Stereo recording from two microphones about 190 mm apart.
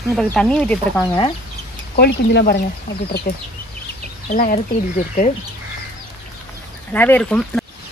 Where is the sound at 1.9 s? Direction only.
55° left (ahead or behind).